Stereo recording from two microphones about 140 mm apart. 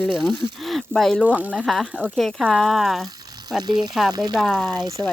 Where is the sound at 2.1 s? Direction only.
Centre (ahead or behind).